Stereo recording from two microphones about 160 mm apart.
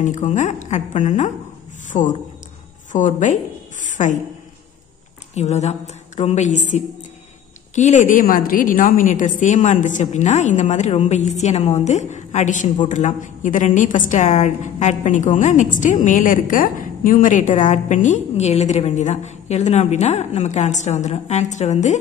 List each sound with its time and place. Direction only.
0.0 s a woman's voice: 50° left (ahead or behind)
3.8 s a sound: 50° left (ahead or behind)
5.3 s a woman's voice: 45° left (ahead or behind)
7.7 s a woman's voice: 50° left (ahead or behind)